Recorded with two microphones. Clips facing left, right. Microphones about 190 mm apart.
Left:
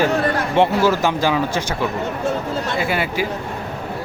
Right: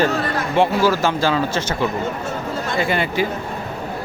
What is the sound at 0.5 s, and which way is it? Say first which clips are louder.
Speech: even; 20° left (ahead or behind).